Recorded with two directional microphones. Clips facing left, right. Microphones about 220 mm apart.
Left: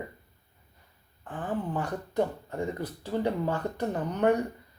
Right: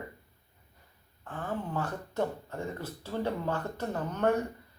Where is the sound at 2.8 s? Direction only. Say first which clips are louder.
Left 4 dB; 15° left (ahead or behind).